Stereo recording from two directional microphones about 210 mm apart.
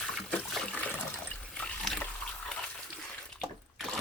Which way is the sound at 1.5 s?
5° left (ahead or behind).